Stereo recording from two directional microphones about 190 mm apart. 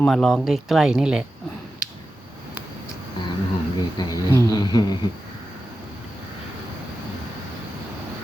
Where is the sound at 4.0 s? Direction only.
20° left (ahead or behind).